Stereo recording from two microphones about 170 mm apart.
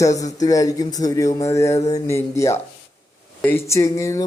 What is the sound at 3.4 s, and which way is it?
Speech, 15° left (ahead or behind).